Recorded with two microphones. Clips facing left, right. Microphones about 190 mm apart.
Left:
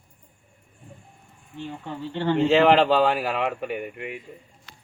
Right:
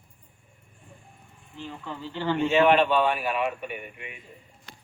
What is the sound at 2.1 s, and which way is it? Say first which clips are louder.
Speech: left 4 dB; 25° left (ahead or behind).